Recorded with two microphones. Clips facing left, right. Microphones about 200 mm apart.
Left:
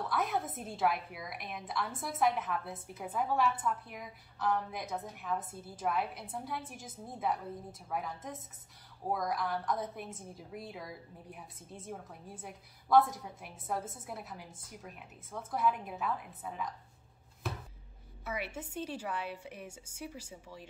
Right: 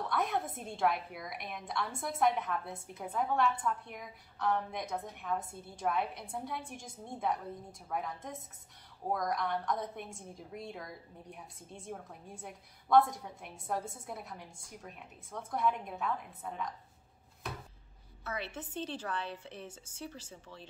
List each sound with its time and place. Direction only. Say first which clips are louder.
0.1 s a woman's voice: even; centre (ahead or behind)
18.2 s a woman's voice: left 1 dB; 10° left (ahead or behind)